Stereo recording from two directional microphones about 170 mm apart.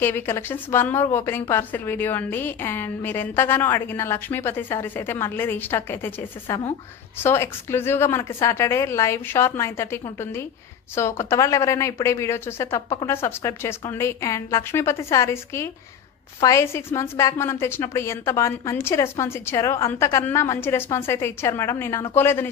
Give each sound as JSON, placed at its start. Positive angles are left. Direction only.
{"t": 0.0, "sound": "a woman's voice", "side_deg": 15}